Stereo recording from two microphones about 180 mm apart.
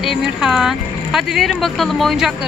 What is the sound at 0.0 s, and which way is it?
Speech, centre (ahead or behind).